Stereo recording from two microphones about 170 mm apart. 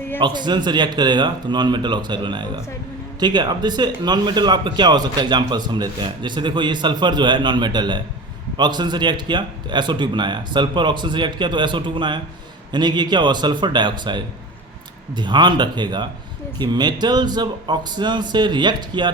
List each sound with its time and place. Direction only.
0.2 s speech: 25° right (ahead or behind)